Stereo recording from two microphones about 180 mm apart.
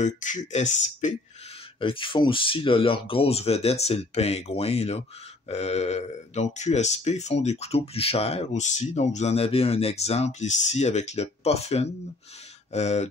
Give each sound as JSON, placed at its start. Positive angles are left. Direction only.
{"t": 0.0, "sound": "speech", "side_deg": 40}
{"t": 1.8, "sound": "speech", "side_deg": 30}